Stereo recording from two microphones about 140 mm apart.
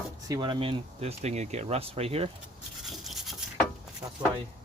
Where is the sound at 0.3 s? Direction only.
30° right (ahead or behind); by 2.3 s 45° right (ahead or behind).